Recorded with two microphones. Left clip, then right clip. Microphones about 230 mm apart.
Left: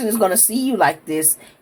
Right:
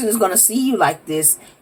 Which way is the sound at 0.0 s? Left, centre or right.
Left.